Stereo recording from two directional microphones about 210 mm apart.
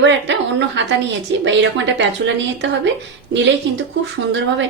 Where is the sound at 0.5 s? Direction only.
60° right (ahead or behind).